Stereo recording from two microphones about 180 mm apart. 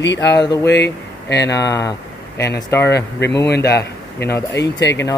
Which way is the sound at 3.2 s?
70° left (ahead or behind).